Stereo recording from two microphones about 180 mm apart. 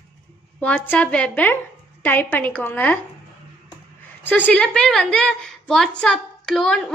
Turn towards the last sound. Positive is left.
turn(degrees=5)  # may be behind; listen again after turning